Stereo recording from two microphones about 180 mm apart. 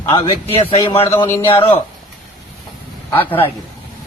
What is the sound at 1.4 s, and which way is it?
Speech, 30° left (ahead or behind).